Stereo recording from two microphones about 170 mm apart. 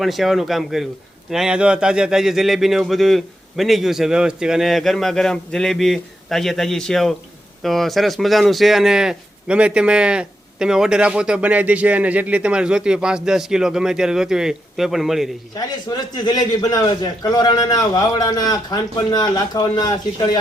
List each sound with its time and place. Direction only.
0.0 s speech: centre (ahead or behind)
15.5 s a man's voice: 25° left (ahead or behind)